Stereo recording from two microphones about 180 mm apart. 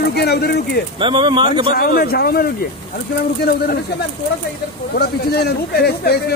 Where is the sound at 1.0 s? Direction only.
25° right (ahead or behind).